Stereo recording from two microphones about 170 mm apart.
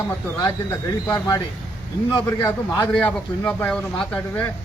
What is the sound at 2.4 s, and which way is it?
Speech, 15° left (ahead or behind).